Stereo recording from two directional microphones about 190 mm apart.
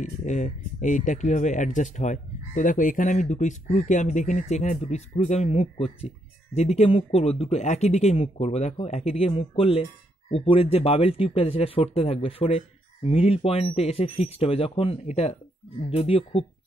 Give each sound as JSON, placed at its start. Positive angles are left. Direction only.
{"t": 0.2, "sound": "speech", "side_deg": 40}